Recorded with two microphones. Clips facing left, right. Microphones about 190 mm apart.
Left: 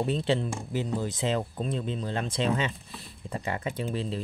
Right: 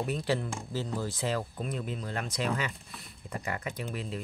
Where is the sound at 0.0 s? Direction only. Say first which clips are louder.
Left 4 dB; 25° left (ahead or behind).